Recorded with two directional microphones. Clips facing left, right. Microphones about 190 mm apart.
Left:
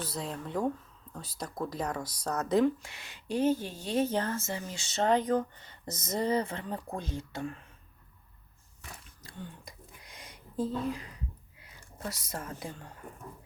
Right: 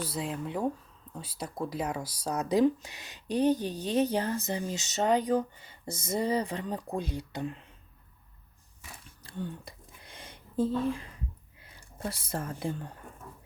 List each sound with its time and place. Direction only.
0.1 s speech: 5° right (ahead or behind); by 7.7 s 20° right (ahead or behind)
9.2 s a sound: 30° right (ahead or behind)
11.6 s speech: 30° right (ahead or behind)